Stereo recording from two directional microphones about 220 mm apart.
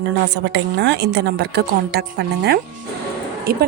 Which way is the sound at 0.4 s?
50° right (ahead or behind).